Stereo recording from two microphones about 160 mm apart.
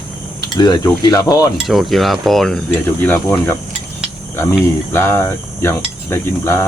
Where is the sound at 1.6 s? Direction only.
Centre (ahead or behind).